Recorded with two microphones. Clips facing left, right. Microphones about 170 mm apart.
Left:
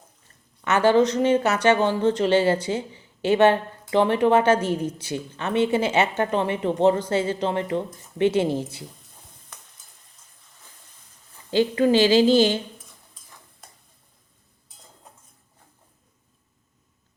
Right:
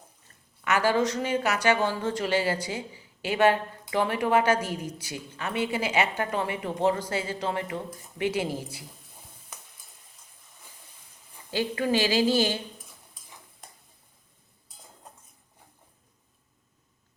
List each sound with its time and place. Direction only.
0.6 s speech: 25° left (ahead or behind)
11.5 s speech: 25° left (ahead or behind)